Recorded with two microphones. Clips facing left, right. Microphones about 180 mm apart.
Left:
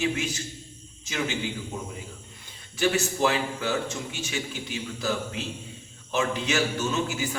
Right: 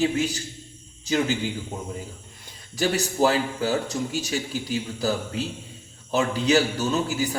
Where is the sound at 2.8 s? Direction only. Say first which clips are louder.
Right 2 dB; 35° right (ahead or behind).